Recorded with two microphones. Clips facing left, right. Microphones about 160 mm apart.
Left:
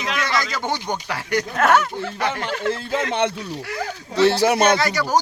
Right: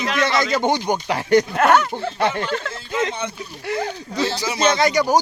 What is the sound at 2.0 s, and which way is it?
Speech, 30° right (ahead or behind).